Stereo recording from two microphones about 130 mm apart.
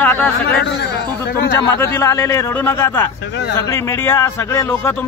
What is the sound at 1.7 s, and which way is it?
A man's voice, 25° left (ahead or behind).